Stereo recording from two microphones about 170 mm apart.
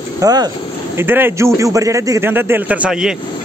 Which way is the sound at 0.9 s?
10° right (ahead or behind).